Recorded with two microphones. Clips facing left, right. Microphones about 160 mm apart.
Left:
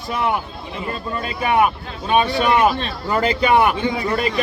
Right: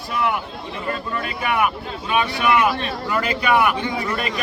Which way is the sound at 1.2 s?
30° left (ahead or behind).